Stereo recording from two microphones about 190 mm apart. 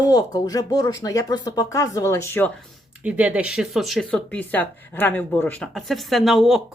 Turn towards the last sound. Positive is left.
turn(degrees=0)  # may be behind; listen again after turning